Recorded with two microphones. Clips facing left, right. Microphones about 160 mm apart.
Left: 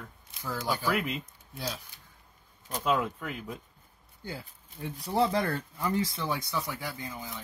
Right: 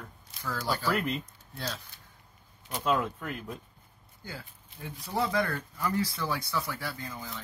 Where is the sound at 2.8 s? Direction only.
5° left (ahead or behind).